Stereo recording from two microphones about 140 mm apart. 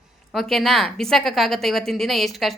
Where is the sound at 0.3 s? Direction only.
Centre (ahead or behind).